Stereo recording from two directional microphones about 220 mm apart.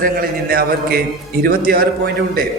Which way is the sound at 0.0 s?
40° right (ahead or behind).